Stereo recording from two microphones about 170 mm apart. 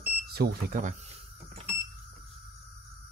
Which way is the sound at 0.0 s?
65° right (ahead or behind).